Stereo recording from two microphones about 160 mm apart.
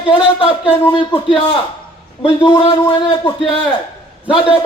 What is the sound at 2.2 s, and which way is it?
Speech, 30° left (ahead or behind).